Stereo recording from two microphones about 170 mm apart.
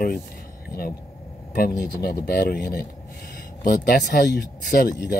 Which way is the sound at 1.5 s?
65° left (ahead or behind).